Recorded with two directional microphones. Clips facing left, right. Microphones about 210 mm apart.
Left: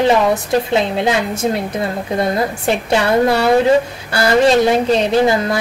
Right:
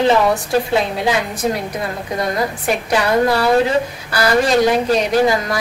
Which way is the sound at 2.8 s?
25° left (ahead or behind).